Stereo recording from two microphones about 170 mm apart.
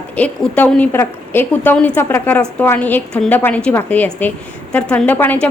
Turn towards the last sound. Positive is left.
turn(degrees=10)  # may be behind; listen again after turning